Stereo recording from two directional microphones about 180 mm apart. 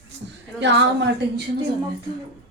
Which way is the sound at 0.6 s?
85° right.